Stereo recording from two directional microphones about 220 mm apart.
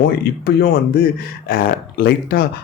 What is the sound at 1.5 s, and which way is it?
Speech, 40° left (ahead or behind).